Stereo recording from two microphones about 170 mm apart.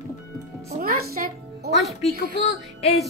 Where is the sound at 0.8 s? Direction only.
60° right (ahead or behind).